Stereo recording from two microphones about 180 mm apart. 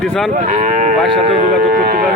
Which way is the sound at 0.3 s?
45° right (ahead or behind).